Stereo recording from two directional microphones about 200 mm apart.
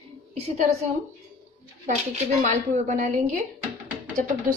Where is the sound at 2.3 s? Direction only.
35° right (ahead or behind).